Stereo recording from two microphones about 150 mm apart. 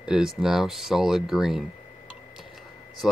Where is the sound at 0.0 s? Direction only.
5° right (ahead or behind).